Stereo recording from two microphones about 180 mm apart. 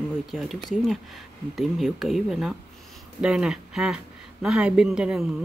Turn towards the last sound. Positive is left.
turn(degrees=-5)  # may be behind; listen again after turning